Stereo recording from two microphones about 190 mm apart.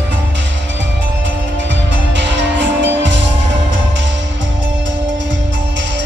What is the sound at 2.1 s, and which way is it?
Music, 70° right (ahead or behind).